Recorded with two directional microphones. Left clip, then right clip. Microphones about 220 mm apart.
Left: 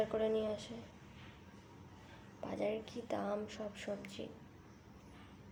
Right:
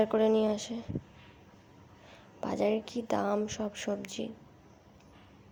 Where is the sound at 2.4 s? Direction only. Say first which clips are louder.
Right 9 dB; 40° right (ahead or behind).